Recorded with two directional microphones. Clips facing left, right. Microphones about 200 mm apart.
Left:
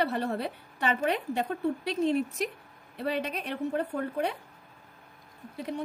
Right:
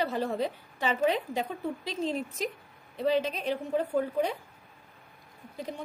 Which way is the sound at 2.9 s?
65° left (ahead or behind).